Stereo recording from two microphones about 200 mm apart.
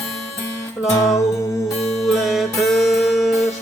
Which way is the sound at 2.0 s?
Centre (ahead or behind).